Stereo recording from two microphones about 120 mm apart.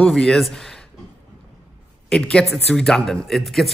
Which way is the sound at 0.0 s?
5° left (ahead or behind).